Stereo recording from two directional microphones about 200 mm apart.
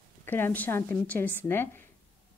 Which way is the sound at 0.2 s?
10° left (ahead or behind).